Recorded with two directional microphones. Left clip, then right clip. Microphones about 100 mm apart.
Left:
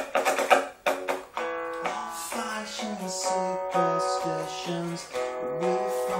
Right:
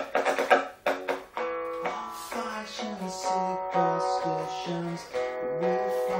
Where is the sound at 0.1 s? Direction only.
30° right (ahead or behind).